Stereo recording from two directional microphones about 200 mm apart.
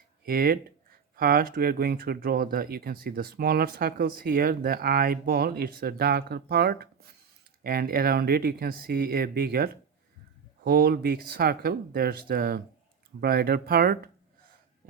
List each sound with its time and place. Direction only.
0.3 s speech: 50° right (ahead or behind)